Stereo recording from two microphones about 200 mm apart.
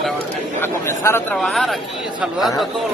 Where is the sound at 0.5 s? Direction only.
10° left (ahead or behind).